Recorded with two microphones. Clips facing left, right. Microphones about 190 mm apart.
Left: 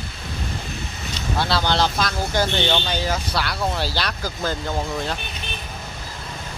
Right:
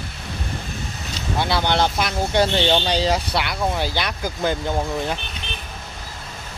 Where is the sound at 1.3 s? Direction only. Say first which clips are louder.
Right 1 dB; 20° right (ahead or behind).